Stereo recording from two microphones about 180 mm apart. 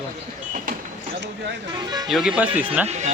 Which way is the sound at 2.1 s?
5° right (ahead or behind).